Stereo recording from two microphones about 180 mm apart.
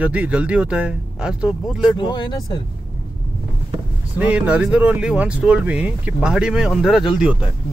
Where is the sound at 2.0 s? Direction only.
25° left (ahead or behind).